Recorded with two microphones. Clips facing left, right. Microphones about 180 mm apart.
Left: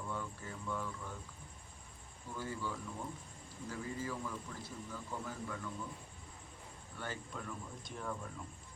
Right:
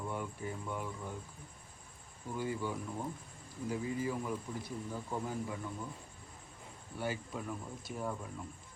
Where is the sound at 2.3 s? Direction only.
15° right (ahead or behind).